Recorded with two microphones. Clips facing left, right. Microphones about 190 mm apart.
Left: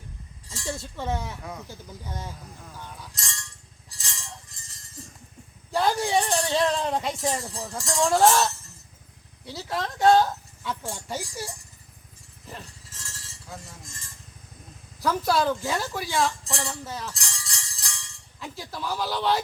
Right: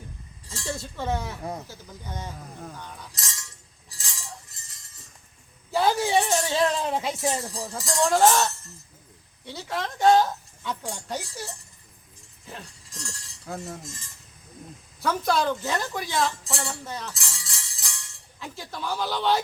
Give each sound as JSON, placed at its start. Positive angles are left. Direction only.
{"t": 0.5, "sound": "speech", "side_deg": 20}
{"t": 3.0, "sound": "chink", "side_deg": 0}
{"t": 5.7, "sound": "speech", "side_deg": -5}
{"t": 12.5, "sound": "a sound", "side_deg": 5}
{"t": 15.0, "sound": "a woman's voice", "side_deg": 0}